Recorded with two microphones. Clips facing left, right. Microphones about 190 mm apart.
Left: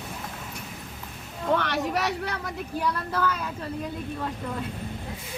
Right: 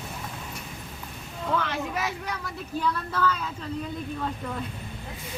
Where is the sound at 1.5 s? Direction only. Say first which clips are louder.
Left 1 dB; 75° left (ahead or behind).